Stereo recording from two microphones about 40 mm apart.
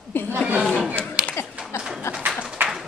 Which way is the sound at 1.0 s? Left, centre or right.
Left.